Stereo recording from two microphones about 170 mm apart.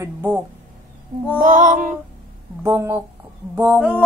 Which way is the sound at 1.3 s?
50° right (ahead or behind).